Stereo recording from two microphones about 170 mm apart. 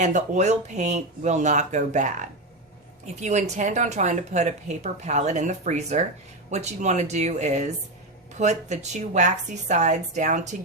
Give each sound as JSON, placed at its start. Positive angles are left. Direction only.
{"t": 0.0, "sound": "speech", "side_deg": -45}